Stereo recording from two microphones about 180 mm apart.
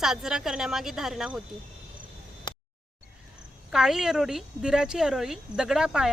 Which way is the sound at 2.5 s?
25° left (ahead or behind).